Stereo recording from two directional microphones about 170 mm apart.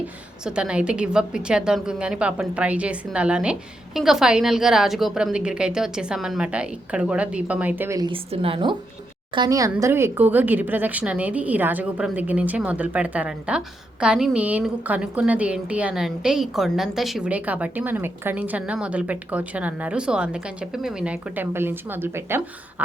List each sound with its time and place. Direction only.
0.4 s a woman's voice: 5° right (ahead or behind)